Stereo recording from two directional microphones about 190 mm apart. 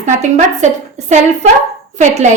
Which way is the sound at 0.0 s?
40° right (ahead or behind).